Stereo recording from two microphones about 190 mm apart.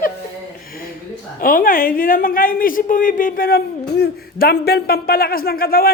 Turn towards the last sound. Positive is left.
turn(degrees=50)  # may be behind; listen again after turning